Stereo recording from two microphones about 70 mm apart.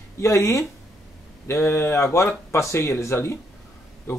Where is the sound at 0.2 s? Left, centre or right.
Left.